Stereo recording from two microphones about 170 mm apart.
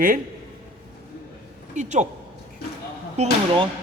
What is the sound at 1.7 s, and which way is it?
Speech, 45° right (ahead or behind).